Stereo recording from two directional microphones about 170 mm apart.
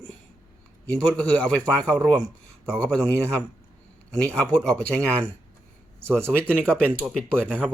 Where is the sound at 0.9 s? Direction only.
5° left (ahead or behind).